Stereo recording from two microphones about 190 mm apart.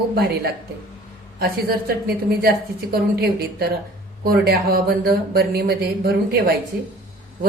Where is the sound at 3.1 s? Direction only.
55° right (ahead or behind).